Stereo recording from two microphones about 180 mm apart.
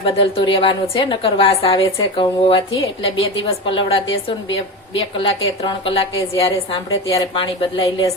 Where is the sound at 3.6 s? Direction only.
30° left (ahead or behind).